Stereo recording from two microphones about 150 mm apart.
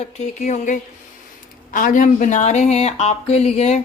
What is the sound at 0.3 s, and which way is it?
A woman's voice, 55° left (ahead or behind).